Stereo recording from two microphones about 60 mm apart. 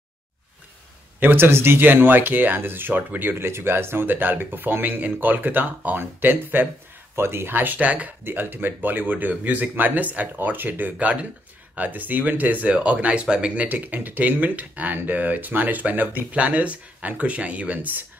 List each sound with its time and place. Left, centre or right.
1.2 s speech: right
8.2 s speech: right; by 13.7 s centre
13.7 s speech: right